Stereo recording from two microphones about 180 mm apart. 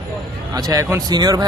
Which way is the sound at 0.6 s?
20° right (ahead or behind).